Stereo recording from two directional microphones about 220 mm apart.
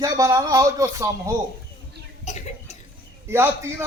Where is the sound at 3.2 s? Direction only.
10° right (ahead or behind).